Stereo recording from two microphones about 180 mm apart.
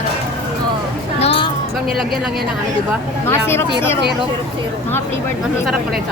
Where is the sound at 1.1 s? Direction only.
35° left (ahead or behind).